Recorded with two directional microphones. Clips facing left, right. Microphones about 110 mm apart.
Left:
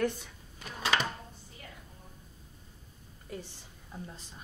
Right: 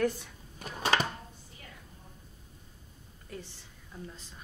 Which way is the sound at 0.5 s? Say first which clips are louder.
Right 2 dB; 45° right (ahead or behind).